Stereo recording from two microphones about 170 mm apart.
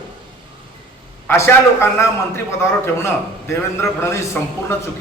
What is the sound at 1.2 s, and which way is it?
Speech, 15° left (ahead or behind).